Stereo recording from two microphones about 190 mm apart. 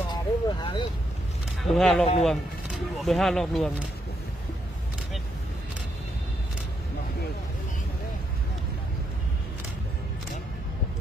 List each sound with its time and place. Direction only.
0.1 s vehicle: 25° left (ahead or behind)
1.6 s speech: centre (ahead or behind)